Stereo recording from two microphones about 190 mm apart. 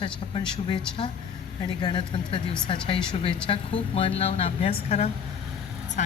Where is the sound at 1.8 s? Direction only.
25° left (ahead or behind).